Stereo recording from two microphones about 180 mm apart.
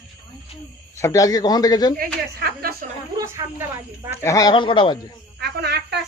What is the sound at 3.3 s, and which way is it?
Speech, 15° right (ahead or behind).